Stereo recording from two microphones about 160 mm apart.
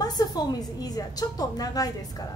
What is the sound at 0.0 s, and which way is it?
A woman's voice, 25° left (ahead or behind).